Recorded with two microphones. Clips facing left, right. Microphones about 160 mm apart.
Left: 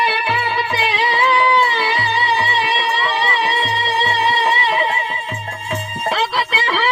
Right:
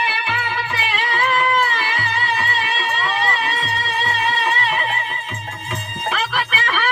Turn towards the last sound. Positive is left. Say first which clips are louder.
# left 3 dB
turn(degrees=30)  # may be behind; listen again after turning